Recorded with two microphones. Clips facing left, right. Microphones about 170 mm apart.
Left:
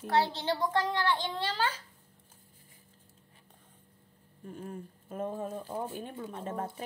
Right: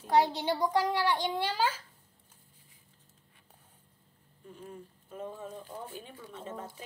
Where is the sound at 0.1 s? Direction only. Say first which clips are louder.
Right 2 dB; 15° right (ahead or behind).